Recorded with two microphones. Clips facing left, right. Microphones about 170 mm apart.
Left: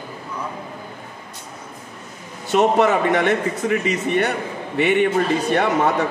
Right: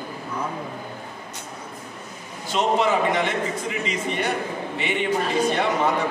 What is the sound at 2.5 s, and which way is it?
A man's voice, 60° left (ahead or behind).